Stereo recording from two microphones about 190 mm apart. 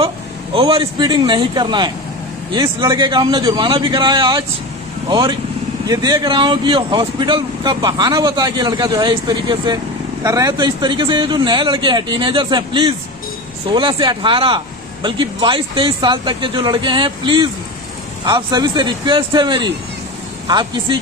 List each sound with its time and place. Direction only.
0.6 s speech: 30° right (ahead or behind)